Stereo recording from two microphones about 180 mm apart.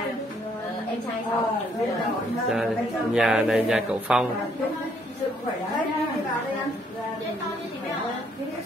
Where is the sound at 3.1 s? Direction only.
Centre (ahead or behind).